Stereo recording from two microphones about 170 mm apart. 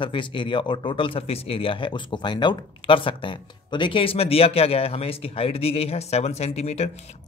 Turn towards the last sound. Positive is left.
turn(degrees=40)  # may be behind; listen again after turning